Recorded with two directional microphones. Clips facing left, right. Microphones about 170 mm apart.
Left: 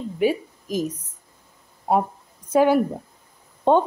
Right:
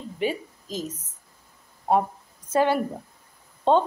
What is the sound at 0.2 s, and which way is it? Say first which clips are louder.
Speech: left 6 dB; 10° left (ahead or behind).